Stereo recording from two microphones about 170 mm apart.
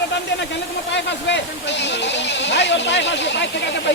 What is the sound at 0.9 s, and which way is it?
Speech, 90° left.